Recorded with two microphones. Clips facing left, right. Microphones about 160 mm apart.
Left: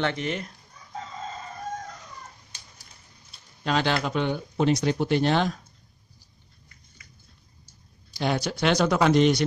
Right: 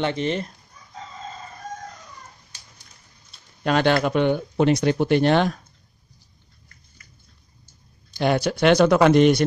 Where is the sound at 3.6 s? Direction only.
55° right (ahead or behind).